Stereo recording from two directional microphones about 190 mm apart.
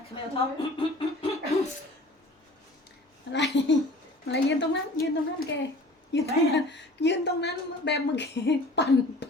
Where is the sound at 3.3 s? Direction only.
70° left (ahead or behind).